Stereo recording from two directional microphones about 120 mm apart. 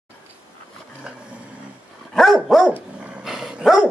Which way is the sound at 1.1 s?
5° right (ahead or behind).